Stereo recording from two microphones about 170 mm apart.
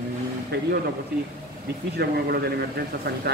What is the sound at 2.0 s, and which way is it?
A man's voice, 70° right (ahead or behind).